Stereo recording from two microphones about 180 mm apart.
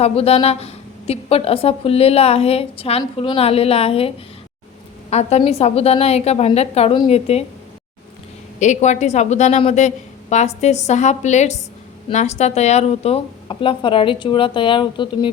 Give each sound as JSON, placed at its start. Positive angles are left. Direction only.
{"t": 0.0, "sound": "speech", "side_deg": 35}
{"t": 5.4, "sound": "speech", "side_deg": 35}
{"t": 8.5, "sound": "a woman's voice", "side_deg": 40}